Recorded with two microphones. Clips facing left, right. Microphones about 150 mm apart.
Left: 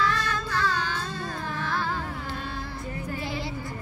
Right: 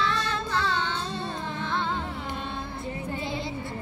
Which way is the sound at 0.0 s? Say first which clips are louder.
Left 1 dB; 25° right (ahead or behind).